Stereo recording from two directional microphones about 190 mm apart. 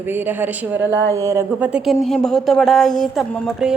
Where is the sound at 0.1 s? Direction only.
10° right (ahead or behind).